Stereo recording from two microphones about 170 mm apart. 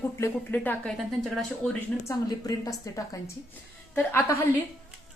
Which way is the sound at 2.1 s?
20° left (ahead or behind).